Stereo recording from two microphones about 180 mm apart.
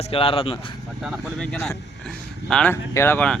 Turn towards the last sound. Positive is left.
turn(degrees=10)  # may be behind; listen again after turning